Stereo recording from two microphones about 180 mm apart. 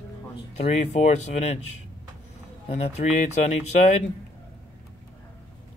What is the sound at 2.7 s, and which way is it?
Speech, 35° left (ahead or behind).